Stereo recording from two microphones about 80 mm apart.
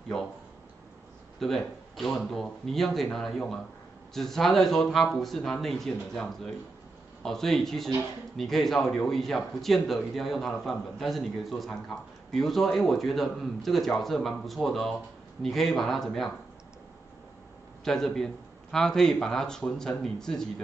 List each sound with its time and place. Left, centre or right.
0.1 s a man's voice: centre
1.4 s a man's voice: centre
17.8 s a man's voice: centre